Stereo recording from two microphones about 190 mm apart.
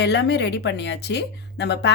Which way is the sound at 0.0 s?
65° left (ahead or behind).